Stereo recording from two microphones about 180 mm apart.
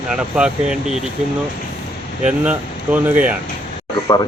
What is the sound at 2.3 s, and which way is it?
Speech, 10° right (ahead or behind).